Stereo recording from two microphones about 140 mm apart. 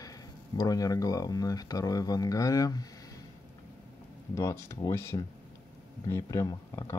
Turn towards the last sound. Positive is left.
turn(degrees=25)  # may be behind; listen again after turning